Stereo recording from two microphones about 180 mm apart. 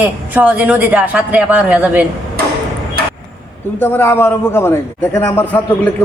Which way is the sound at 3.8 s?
10° left (ahead or behind).